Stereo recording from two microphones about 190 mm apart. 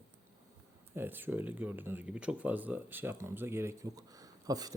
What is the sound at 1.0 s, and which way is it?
Speech, 10° right (ahead or behind).